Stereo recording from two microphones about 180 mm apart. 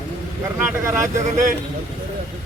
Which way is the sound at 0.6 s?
15° right (ahead or behind).